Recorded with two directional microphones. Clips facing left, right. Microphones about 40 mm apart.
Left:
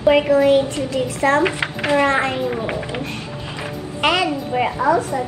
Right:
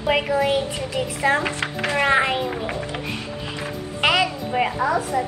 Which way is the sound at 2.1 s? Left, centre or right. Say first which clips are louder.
Even; right.